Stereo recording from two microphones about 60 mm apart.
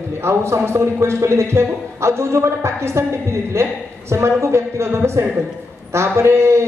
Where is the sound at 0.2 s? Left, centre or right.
Right.